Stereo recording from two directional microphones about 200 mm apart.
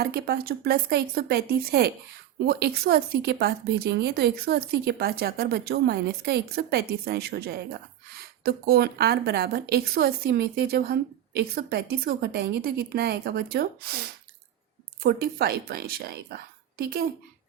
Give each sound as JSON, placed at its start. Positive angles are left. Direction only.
{"t": 0.0, "sound": "a woman's voice", "side_deg": -50}
{"t": 15.0, "sound": "a woman's voice", "side_deg": -50}